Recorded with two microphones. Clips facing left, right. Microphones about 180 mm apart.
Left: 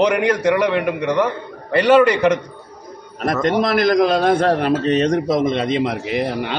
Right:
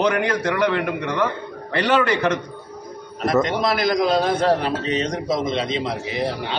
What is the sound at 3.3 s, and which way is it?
A man's voice, 55° left (ahead or behind).